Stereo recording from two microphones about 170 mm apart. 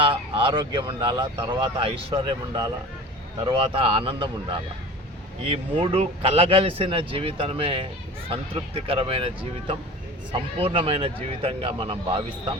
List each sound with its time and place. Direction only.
0.0 s speech: 30° right (ahead or behind)